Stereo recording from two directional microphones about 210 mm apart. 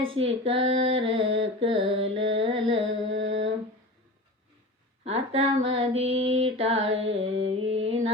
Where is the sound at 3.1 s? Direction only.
60° right (ahead or behind).